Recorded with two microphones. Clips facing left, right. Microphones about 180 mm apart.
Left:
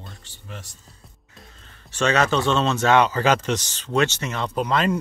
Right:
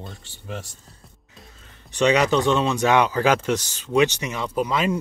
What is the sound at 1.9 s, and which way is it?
Speech, 15° right (ahead or behind).